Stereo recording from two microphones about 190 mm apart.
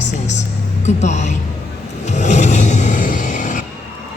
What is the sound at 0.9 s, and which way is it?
Music, 40° left (ahead or behind).